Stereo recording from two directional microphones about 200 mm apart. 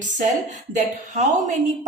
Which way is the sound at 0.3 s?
35° right (ahead or behind).